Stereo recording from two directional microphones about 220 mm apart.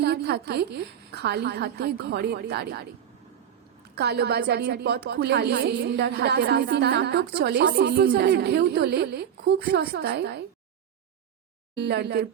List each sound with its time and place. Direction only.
0.0 s a woman's voice: 45° right (ahead or behind)
3.9 s a woman's voice: 45° right (ahead or behind)
11.8 s a woman's voice: 50° right (ahead or behind)